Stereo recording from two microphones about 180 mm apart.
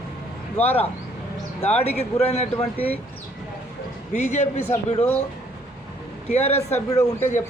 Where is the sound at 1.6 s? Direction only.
35° left (ahead or behind).